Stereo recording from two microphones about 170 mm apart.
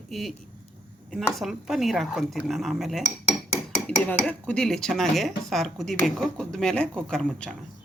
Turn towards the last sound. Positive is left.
turn(degrees=5)  # may be behind; listen again after turning